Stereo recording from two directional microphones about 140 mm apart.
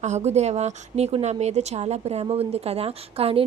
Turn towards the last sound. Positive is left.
turn(degrees=-45)  # may be behind; listen again after turning